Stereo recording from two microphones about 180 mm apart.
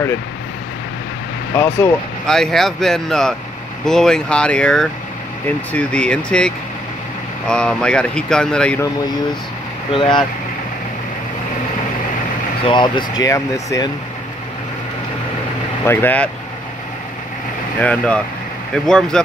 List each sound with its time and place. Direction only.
1.5 s speech: 15° left (ahead or behind)
9.9 s speech: 25° left (ahead or behind)
12.6 s speech: 25° left (ahead or behind)
15.8 s speech: 10° left (ahead or behind)
17.7 s speech: 5° left (ahead or behind)